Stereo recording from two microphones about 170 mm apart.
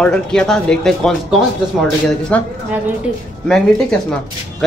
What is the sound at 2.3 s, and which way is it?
Speech, 10° left (ahead or behind).